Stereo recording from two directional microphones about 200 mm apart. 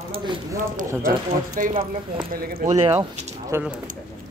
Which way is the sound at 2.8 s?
15° right (ahead or behind).